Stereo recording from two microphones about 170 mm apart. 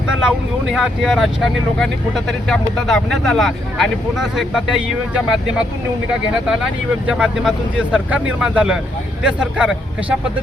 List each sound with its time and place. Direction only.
0.2 s speech: 5° right (ahead or behind)
7.1 s speech: 5° right (ahead or behind)